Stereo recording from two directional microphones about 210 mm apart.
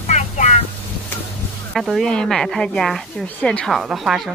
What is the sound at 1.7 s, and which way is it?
Speech, centre (ahead or behind).